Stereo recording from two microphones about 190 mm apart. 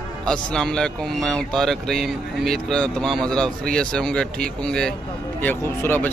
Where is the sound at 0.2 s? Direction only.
5° left (ahead or behind).